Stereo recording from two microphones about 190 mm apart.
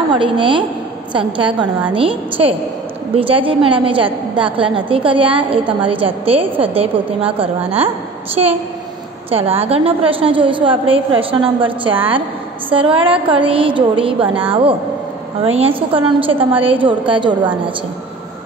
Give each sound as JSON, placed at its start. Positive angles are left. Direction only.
{"t": 0.1, "sound": "a woman's voice", "side_deg": -25}
{"t": 9.3, "sound": "a woman's voice", "side_deg": -30}